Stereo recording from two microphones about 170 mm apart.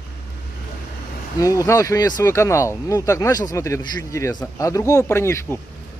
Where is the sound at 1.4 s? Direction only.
20° left (ahead or behind).